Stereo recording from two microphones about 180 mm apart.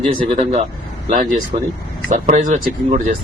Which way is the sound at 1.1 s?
45° right (ahead or behind).